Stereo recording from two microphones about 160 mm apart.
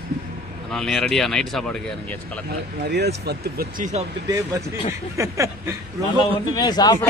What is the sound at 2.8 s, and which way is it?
Speech, 90° right.